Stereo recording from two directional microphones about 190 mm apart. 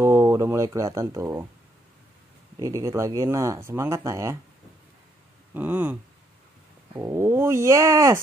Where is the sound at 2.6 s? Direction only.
15° right (ahead or behind).